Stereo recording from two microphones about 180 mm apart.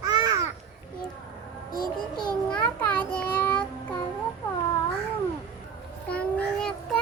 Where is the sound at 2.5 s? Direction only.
10° left (ahead or behind).